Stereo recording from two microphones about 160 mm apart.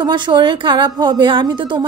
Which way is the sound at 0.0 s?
25° right (ahead or behind).